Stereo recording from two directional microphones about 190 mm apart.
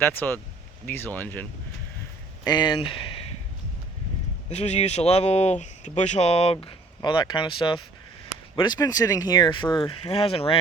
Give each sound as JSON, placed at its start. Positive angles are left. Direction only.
{"t": 0.0, "sound": "speech", "side_deg": 10}
{"t": 2.4, "sound": "speech", "side_deg": 20}
{"t": 4.4, "sound": "speech", "side_deg": 35}